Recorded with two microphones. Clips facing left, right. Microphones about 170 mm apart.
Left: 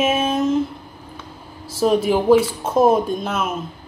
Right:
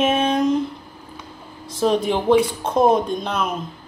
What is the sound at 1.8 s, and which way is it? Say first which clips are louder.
A woman's voice: left 2 dB; 5° left (ahead or behind).